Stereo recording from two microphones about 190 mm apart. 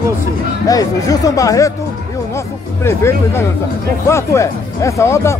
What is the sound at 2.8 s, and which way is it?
Speech, 15° left (ahead or behind).